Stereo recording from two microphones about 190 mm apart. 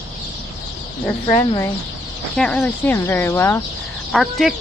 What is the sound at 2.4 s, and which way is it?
Speech, 5° left (ahead or behind).